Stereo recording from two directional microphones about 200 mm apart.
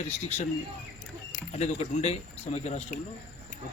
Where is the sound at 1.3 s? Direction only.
35° left (ahead or behind).